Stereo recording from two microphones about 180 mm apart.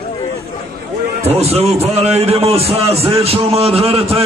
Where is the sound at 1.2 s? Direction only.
35° right (ahead or behind).